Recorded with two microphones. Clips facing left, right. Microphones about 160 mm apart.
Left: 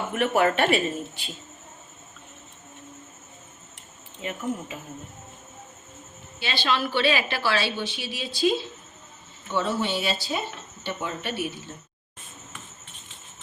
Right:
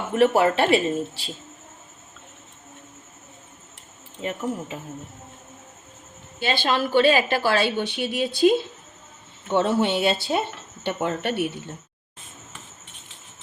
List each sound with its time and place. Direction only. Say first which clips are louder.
0.1 s speech: right 5 dB; 30° right (ahead or behind)
4.2 s speech: right 2 dB; 40° right (ahead or behind)
6.4 s speech: right 3 dB; 50° right (ahead or behind)